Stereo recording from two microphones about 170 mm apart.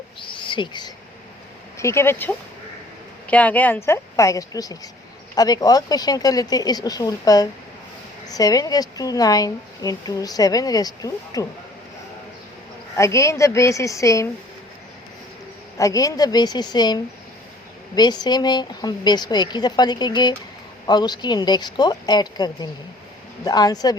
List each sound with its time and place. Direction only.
0.2 s speech: 30° left (ahead or behind)
1.8 s a woman's voice: 15° left (ahead or behind)
13.0 s speech: 15° left (ahead or behind)
15.8 s a woman's voice: 20° left (ahead or behind)